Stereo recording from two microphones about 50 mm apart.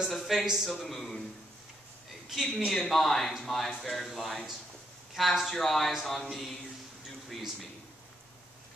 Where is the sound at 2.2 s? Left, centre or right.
Centre.